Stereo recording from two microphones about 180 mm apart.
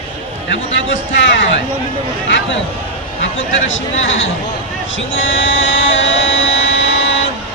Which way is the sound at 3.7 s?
90° left.